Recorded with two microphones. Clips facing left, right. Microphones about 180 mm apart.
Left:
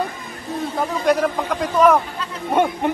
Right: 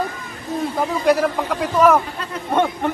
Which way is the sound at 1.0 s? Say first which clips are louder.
Right 1 dB; 5° right (ahead or behind).